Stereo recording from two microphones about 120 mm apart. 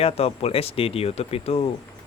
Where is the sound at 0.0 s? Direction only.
55° left (ahead or behind).